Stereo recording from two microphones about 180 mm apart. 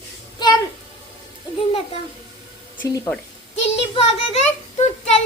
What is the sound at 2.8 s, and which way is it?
Speech, 20° left (ahead or behind).